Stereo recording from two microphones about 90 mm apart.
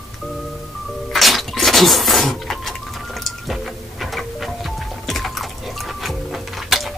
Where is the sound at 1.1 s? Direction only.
Centre (ahead or behind).